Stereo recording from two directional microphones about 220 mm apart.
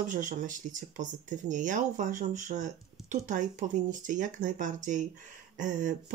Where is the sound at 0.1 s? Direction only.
35° right (ahead or behind).